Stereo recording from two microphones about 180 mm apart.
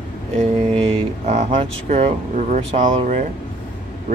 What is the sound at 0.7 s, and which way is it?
Speech, 35° right (ahead or behind).